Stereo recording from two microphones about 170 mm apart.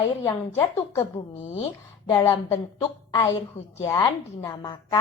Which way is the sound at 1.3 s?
40° left (ahead or behind).